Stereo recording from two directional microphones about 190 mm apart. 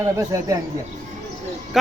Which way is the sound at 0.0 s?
20° right (ahead or behind).